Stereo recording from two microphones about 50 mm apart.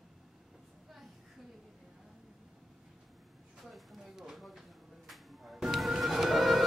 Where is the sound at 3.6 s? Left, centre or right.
Centre.